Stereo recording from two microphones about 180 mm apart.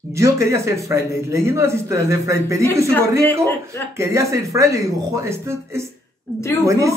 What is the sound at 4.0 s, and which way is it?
Speech, 15° right (ahead or behind).